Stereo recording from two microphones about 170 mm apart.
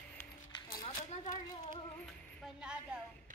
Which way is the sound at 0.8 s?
35° left (ahead or behind).